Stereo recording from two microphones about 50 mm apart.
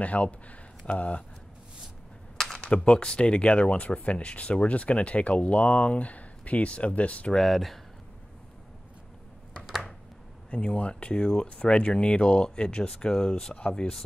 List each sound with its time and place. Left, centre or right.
0.0 s speech: left
2.3 s typing: centre
2.6 s speech: left
7.3 s speech: centre
9.7 s a sound: centre
10.5 s speech: left